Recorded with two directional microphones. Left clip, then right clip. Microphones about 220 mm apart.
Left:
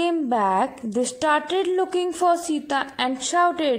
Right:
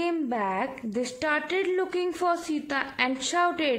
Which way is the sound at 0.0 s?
15° left (ahead or behind).